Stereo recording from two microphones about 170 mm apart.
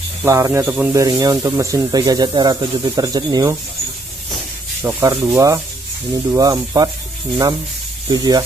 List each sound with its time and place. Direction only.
0.2 s a man's voice: 15° right (ahead or behind)
4.8 s a man's voice: 15° right (ahead or behind)
8.1 s speech: 25° right (ahead or behind)